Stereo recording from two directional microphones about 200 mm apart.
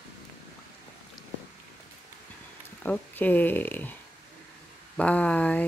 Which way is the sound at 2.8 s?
10° left (ahead or behind).